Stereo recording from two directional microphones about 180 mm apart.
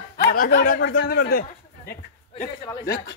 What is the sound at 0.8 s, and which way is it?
Speech, 90° left.